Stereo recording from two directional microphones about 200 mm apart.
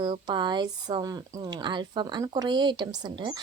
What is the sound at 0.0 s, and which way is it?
Speech, 25° right (ahead or behind).